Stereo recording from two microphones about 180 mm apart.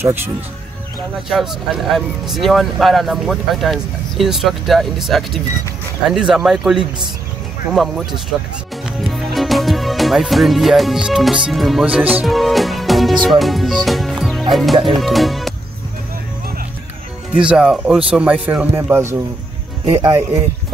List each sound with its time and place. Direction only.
0.0 s speech: 10° right (ahead or behind)
1.3 s speech: centre (ahead or behind)
8.8 s music: centre (ahead or behind)
13.2 s speech: centre (ahead or behind)
17.3 s speech: 5° right (ahead or behind)